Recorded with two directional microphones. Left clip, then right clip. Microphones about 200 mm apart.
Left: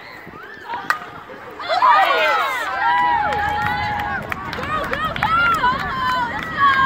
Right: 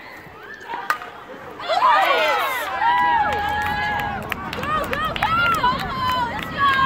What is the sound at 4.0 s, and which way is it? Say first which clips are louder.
Run: left 2 dB; 45° right (ahead or behind).